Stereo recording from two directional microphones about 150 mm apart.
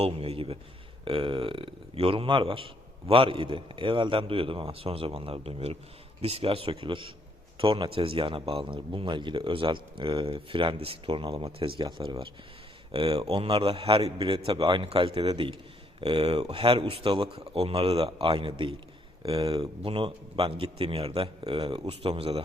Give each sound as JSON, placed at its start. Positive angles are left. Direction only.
{"t": 0.0, "sound": "a man's voice", "side_deg": -40}
{"t": 19.8, "sound": "a man's voice", "side_deg": -35}